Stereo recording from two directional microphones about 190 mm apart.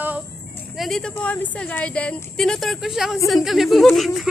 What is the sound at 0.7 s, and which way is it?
A woman's voice, centre (ahead or behind).